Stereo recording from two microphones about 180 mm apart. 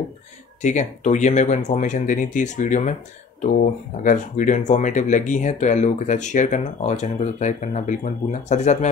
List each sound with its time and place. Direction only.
0.6 s speech: 40° left (ahead or behind)